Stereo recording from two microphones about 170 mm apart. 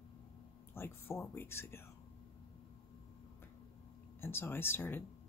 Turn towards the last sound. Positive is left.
turn(degrees=15)  # may be behind; listen again after turning